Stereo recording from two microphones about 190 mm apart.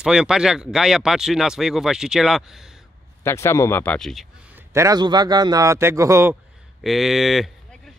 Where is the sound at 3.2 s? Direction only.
15° left (ahead or behind).